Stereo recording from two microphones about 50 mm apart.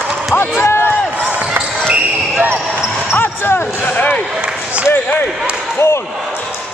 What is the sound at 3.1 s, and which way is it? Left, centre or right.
Basketball bounce, left.